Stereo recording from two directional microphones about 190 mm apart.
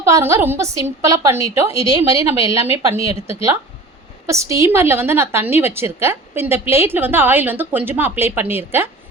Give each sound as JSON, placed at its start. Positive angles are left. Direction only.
{"t": 0.0, "sound": "a woman's voice", "side_deg": -15}